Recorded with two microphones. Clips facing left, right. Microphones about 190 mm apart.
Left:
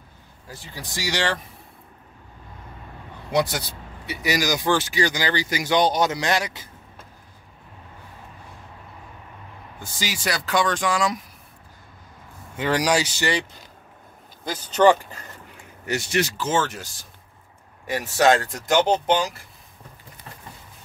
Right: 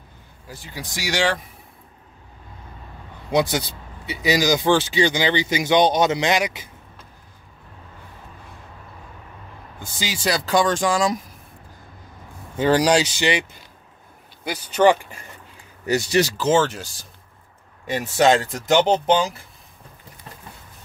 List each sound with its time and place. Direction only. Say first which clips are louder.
3.3 s speech: right 3 dB; 20° right (ahead or behind)
9.9 s speech: right 4 dB; 25° right (ahead or behind)
12.5 s speech: right 5 dB; 30° right (ahead or behind); by 15.1 s 10° right (ahead or behind)
15.9 s speech: right 5 dB; 35° right (ahead or behind)
17.8 s speech: right 1 dB; 25° right (ahead or behind)